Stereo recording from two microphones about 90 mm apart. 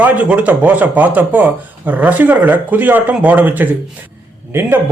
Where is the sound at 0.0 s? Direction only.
15° right (ahead or behind).